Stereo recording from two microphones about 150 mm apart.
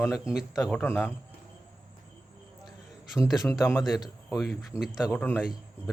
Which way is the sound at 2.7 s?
5° right (ahead or behind).